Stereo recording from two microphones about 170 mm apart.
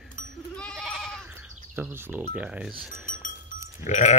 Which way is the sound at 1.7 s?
15° right (ahead or behind).